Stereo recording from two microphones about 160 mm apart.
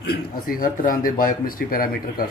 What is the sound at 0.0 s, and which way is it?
Speech, 75° left (ahead or behind).